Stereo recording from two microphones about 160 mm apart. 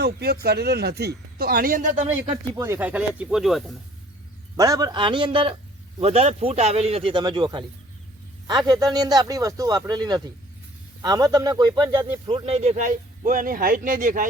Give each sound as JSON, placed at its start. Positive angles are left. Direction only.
{"t": 0.0, "sound": "speech", "side_deg": -80}
{"t": 2.6, "sound": "speech", "side_deg": -15}
{"t": 4.5, "sound": "speech", "side_deg": -20}